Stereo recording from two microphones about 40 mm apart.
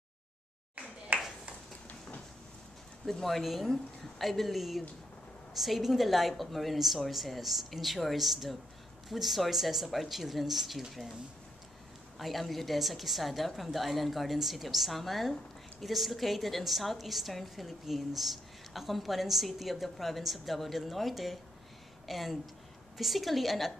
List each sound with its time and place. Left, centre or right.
1.1 s a sound: right
3.1 s a woman's voice: centre
12.2 s a woman's voice: centre